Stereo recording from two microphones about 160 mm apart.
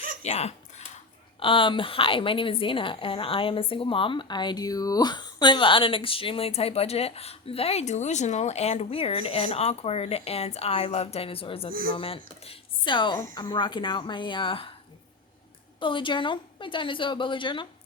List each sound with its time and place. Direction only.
0.2 s speech: 40° left (ahead or behind)
13.1 s a woman's voice: 15° left (ahead or behind)
13.4 s a woman's voice: 30° left (ahead or behind)
15.8 s speech: 30° left (ahead or behind)